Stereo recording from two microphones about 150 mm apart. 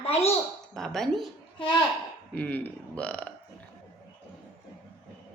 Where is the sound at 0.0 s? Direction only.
40° left (ahead or behind).